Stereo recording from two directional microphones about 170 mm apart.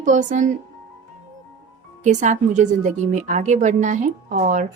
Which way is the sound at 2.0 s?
45° right (ahead or behind).